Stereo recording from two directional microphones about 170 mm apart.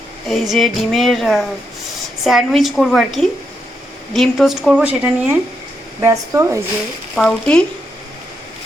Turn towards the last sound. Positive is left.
turn(degrees=5)  # may be behind; listen again after turning